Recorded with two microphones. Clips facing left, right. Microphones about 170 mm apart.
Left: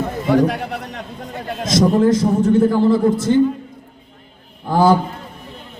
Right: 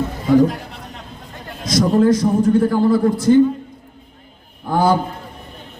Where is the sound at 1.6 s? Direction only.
25° left (ahead or behind).